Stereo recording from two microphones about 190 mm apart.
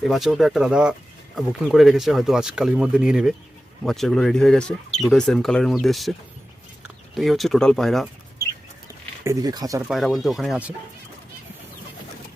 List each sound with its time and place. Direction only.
0.0 s speech: centre (ahead or behind)
9.2 s speech: 20° right (ahead or behind)
9.9 s speech: centre (ahead or behind)